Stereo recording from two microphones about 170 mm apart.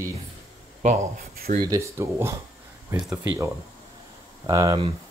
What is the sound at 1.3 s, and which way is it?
Speech, 60° right (ahead or behind).